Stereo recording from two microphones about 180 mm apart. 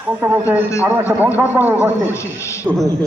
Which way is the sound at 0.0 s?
10° right (ahead or behind).